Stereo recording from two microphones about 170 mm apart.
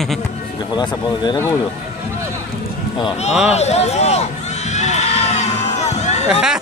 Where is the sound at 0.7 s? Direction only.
25° left (ahead or behind).